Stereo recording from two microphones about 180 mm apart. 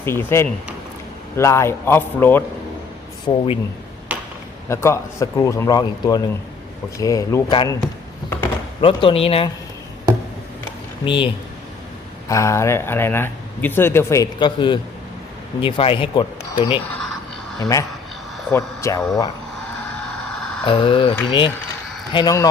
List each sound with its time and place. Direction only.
0.0 s speech: 15° left (ahead or behind)
3.2 s speech: 30° left (ahead or behind)
4.7 s speech: 15° left (ahead or behind)
8.8 s speech: 30° left (ahead or behind)
11.0 s speech: 25° left (ahead or behind)
12.3 s speech: 15° left (ahead or behind)
17.6 s speech: 20° left (ahead or behind)
20.0 s a sound: centre (ahead or behind)
20.7 s speech: 30° left (ahead or behind)